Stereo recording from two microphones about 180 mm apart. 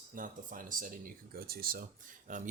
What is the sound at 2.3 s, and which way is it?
Speech, 45° right (ahead or behind).